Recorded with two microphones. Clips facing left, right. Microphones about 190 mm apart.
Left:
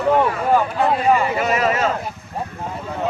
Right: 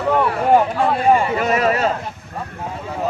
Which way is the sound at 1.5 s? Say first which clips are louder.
Right 3 dB; 40° right (ahead or behind).